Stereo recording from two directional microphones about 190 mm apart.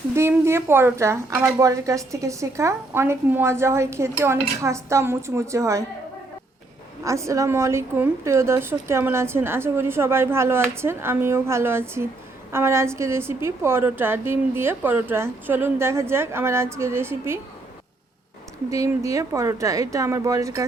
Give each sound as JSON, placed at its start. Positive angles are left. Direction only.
{"t": 0.2, "sound": "a woman's voice", "side_deg": -15}
{"t": 7.0, "sound": "a woman's voice", "side_deg": -15}
{"t": 18.7, "sound": "a woman's voice", "side_deg": -15}